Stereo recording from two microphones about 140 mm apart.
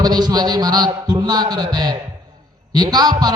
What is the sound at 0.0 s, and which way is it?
A man's voice, 30° right (ahead or behind).